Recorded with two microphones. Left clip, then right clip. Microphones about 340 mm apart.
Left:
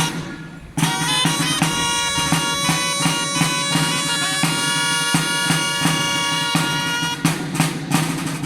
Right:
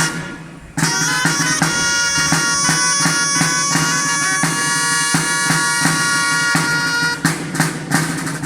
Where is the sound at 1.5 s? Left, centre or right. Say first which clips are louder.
Right 3 dB; centre.